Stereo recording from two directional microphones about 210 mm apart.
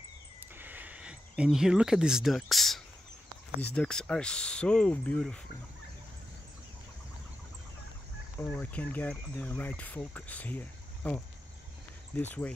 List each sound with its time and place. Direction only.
0.6 s a sound: 10° right (ahead or behind)
3.7 s speech: 5° left (ahead or behind)
8.5 s speech: 5° left (ahead or behind)